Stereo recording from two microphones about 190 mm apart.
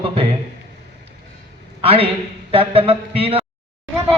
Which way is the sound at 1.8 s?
30° right (ahead or behind).